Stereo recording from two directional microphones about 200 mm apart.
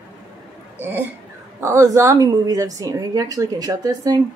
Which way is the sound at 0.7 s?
10° right (ahead or behind).